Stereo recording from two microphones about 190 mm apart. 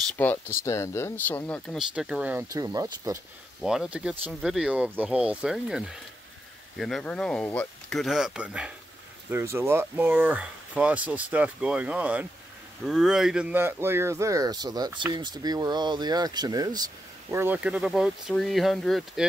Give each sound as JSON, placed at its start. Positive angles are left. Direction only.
{"t": 0.2, "sound": "speech", "side_deg": 10}
{"t": 3.6, "sound": "speech", "side_deg": -5}